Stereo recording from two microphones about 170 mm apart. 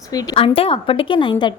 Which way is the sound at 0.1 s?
20° left (ahead or behind).